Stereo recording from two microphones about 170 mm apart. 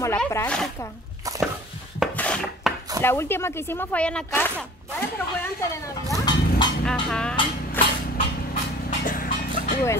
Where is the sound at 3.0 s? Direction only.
15° left (ahead or behind).